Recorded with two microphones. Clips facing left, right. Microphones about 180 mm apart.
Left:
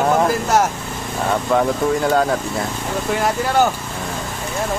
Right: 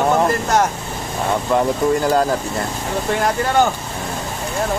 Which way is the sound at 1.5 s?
Centre (ahead or behind).